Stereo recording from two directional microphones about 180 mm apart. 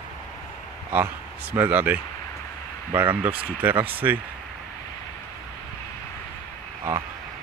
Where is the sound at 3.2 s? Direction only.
10° right (ahead or behind).